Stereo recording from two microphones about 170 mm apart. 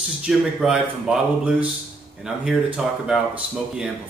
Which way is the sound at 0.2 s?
5° right (ahead or behind).